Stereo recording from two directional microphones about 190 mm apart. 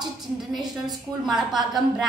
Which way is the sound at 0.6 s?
20° right (ahead or behind).